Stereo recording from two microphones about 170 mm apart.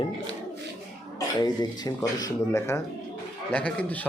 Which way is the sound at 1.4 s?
25° left (ahead or behind).